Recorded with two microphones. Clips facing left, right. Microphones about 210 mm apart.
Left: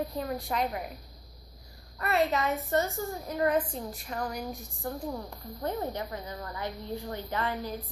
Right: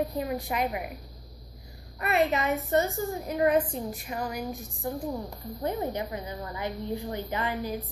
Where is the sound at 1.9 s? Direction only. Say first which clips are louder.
Right 2 dB; 15° right (ahead or behind).